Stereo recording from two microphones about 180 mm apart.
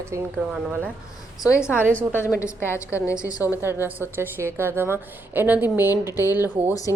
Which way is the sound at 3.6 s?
10° right (ahead or behind).